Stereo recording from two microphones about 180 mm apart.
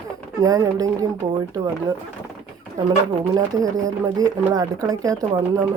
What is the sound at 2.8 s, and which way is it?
Speech, 20° right (ahead or behind).